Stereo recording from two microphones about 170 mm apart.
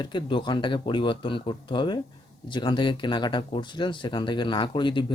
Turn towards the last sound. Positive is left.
turn(degrees=30)  # may be behind; listen again after turning